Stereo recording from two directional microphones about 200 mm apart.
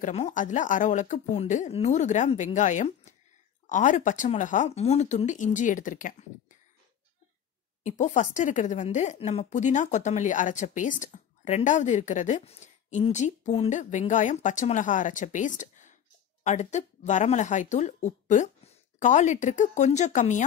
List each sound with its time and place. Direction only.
0.0 s a woman's voice: 35° left (ahead or behind)
8.0 s a woman's voice: 35° left (ahead or behind)